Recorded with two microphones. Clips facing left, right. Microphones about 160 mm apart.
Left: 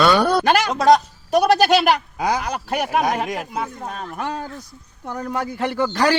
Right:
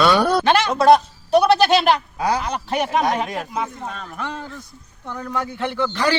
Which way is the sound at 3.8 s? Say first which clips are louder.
Left 2 dB; 50° left (ahead or behind).